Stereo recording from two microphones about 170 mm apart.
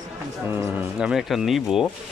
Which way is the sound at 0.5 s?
10° right (ahead or behind).